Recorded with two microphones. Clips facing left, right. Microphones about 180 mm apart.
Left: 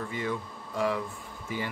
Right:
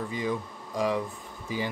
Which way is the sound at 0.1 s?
15° right (ahead or behind).